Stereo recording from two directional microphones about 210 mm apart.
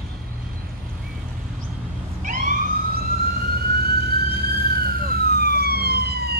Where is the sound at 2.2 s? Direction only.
40° right (ahead or behind).